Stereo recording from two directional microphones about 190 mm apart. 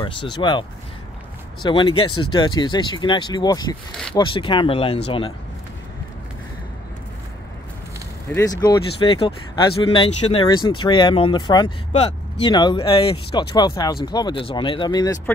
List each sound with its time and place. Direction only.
0.0 s speech: 25° left (ahead or behind)
8.3 s speech: 15° left (ahead or behind)